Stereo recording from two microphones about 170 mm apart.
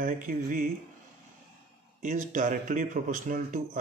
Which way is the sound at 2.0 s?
50° right (ahead or behind).